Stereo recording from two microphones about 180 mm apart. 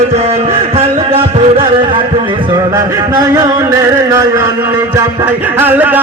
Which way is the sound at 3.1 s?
20° right (ahead or behind).